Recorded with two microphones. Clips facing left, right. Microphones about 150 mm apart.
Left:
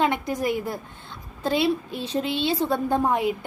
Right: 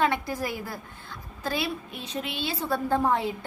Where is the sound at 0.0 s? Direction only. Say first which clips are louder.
Left 3 dB; 20° left (ahead or behind).